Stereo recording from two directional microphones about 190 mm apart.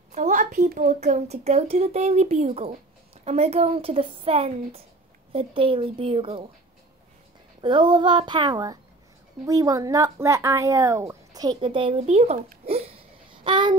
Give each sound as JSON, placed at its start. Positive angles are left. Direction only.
{"t": 0.1, "sound": "a woman's voice", "side_deg": -35}
{"t": 7.6, "sound": "a woman's voice", "side_deg": -25}
{"t": 12.6, "sound": "a sound", "side_deg": -30}